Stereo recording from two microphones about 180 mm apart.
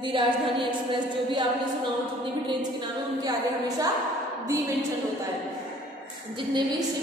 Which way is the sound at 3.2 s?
20° right (ahead or behind).